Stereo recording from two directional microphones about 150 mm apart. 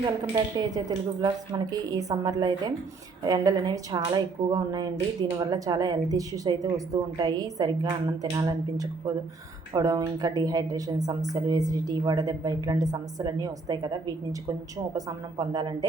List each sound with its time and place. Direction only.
0.3 s a woman's voice: 30° right (ahead or behind)